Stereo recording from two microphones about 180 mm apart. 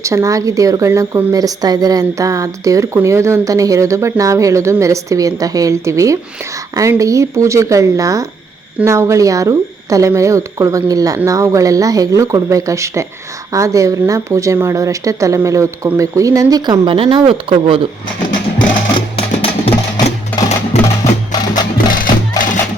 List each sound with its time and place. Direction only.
0.0 s a woman's voice: 15° right (ahead or behind)
18.9 s music: 30° left (ahead or behind)
20.8 s music: 20° left (ahead or behind)
21.8 s music: 50° left (ahead or behind)